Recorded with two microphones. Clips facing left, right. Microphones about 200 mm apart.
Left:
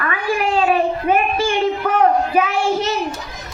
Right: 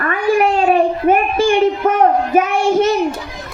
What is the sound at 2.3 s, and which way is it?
Child singing, 50° right (ahead or behind).